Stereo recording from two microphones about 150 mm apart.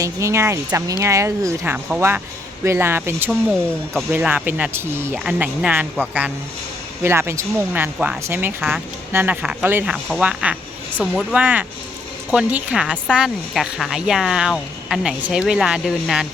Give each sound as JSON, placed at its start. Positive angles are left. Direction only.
{"t": 0.0, "sound": "speech", "side_deg": -20}
{"t": 3.2, "sound": "speech", "side_deg": 5}
{"t": 4.1, "sound": "speech", "side_deg": -10}
{"t": 7.0, "sound": "speech", "side_deg": -15}
{"t": 7.9, "sound": "speech", "side_deg": -5}
{"t": 11.3, "sound": "speech", "side_deg": -10}